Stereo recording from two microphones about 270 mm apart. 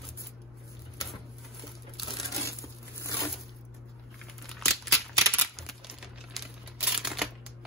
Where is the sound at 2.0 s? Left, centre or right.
Centre.